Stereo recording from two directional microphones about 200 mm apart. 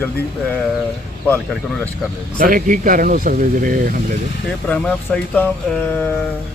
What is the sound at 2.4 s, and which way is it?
Speech, 45° right (ahead or behind).